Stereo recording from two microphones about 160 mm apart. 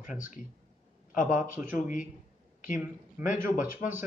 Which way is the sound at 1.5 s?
10° right (ahead or behind).